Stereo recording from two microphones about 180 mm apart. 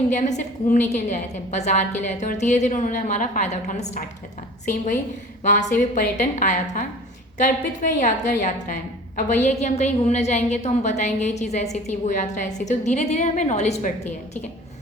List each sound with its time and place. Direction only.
0.1 s a woman's voice: 40° left (ahead or behind)
5.4 s a woman's voice: 40° left (ahead or behind)